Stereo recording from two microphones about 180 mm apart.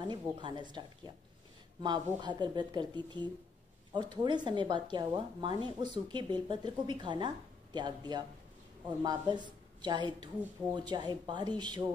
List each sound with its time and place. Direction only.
0.1 s speech: 25° right (ahead or behind)